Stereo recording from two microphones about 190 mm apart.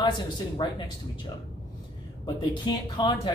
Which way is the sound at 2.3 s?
20° left (ahead or behind).